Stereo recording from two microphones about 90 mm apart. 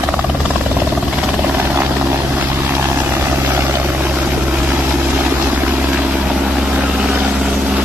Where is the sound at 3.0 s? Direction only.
20° right (ahead or behind).